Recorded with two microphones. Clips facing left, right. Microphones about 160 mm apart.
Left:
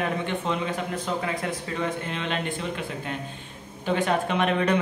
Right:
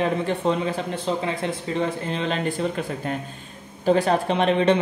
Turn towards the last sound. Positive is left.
turn(degrees=-30)  # may be behind; listen again after turning